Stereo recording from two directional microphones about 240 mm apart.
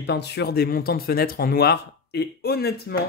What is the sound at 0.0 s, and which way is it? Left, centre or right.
Speech, left.